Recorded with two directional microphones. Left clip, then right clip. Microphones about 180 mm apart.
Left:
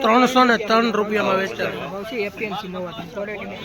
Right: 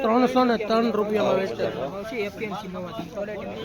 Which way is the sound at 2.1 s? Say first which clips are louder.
Left 6 dB; 30° left (ahead or behind).